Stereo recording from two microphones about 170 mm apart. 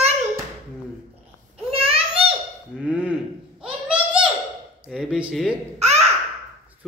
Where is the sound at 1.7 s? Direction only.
35° right (ahead or behind).